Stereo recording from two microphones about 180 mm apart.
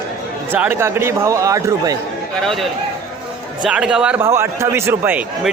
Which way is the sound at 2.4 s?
Centre (ahead or behind).